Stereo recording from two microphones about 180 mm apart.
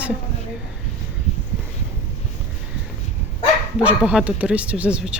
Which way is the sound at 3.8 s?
10° right (ahead or behind).